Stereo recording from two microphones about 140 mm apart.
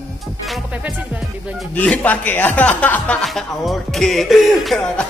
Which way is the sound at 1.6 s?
10° left (ahead or behind).